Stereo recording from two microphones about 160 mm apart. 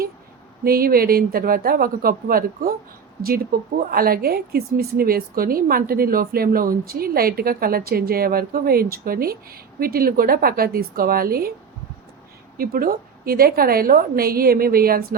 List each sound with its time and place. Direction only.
0.6 s a woman's voice: 70° right (ahead or behind)
12.5 s a woman's voice: 65° right (ahead or behind)